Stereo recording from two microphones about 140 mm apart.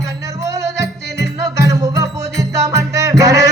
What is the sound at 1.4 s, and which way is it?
Music, 25° right (ahead or behind).